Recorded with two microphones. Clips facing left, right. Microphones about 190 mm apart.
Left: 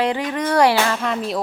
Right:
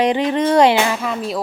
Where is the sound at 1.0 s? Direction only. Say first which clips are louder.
Even; centre (ahead or behind).